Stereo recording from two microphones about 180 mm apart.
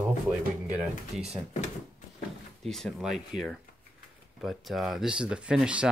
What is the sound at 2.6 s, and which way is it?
Speech, centre (ahead or behind).